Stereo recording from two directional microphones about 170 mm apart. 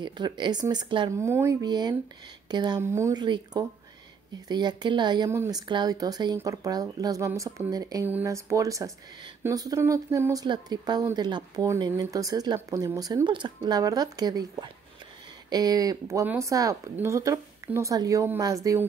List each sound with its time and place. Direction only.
0.0 s speech: 25° right (ahead or behind)
1.1 s speech: 15° right (ahead or behind)